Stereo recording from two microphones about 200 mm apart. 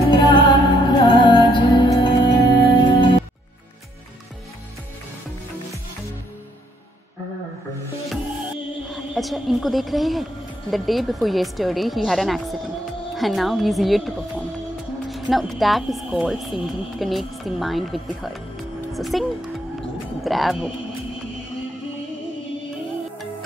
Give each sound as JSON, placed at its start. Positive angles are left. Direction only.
{"t": 0.1, "sound": "music", "side_deg": 25}
{"t": 8.9, "sound": "speech", "side_deg": 0}
{"t": 20.2, "sound": "speech", "side_deg": 0}